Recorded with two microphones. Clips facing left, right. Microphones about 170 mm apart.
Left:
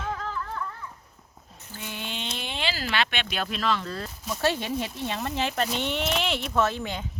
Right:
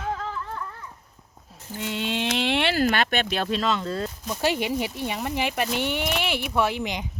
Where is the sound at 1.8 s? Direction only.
75° right (ahead or behind).